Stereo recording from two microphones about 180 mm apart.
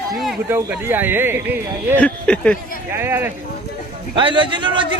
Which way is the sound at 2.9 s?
15° right (ahead or behind).